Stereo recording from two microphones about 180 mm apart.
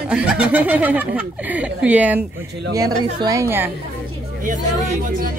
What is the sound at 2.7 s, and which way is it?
A woman's voice, 20° right (ahead or behind).